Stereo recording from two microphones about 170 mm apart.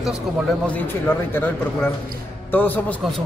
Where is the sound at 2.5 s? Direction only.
10° left (ahead or behind).